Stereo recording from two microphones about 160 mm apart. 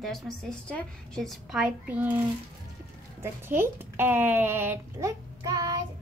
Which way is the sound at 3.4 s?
15° right (ahead or behind).